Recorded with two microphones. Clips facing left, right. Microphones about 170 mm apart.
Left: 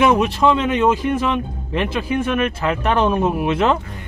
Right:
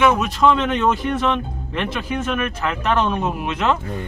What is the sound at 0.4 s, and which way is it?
Speech, 10° left (ahead or behind).